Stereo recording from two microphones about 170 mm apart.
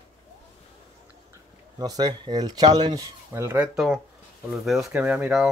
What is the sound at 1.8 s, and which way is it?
Speech, 25° right (ahead or behind).